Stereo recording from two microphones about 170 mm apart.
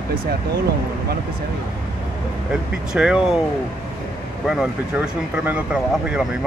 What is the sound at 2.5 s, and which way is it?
Speech, 5° right (ahead or behind).